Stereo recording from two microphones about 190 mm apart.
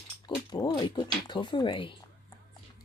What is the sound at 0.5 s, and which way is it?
Speech, 20° left (ahead or behind).